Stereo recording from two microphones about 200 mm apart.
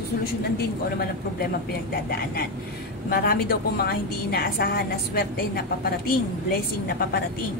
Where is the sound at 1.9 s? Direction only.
50° left (ahead or behind).